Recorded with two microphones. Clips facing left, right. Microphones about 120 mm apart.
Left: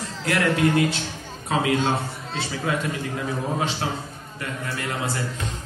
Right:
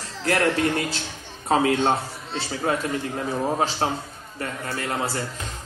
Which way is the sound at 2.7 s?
40° right (ahead or behind).